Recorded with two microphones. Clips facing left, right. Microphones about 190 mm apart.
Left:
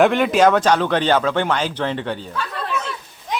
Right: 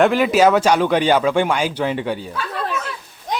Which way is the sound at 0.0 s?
5° right (ahead or behind).